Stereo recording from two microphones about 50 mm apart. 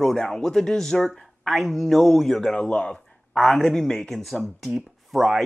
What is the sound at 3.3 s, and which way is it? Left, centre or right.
Speech, centre.